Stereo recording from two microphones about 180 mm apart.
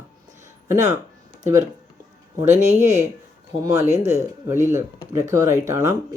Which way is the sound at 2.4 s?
40° right (ahead or behind).